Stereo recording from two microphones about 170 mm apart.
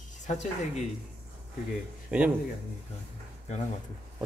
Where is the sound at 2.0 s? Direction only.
10° right (ahead or behind).